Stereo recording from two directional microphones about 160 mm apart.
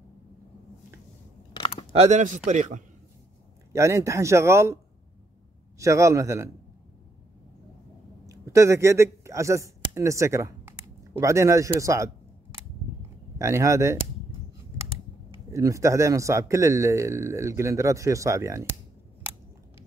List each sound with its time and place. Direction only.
1.5 s chewing: 30° left (ahead or behind)
2.0 s a man's voice: 50° right (ahead or behind)
3.7 s speech: 20° right (ahead or behind)
5.8 s a man's voice: 20° right (ahead or behind)
8.3 s a man's voice: 20° right (ahead or behind)
15.5 s a man's voice: 20° right (ahead or behind)